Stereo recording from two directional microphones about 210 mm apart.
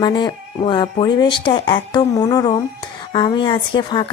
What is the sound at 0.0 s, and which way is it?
Speech, 20° left (ahead or behind).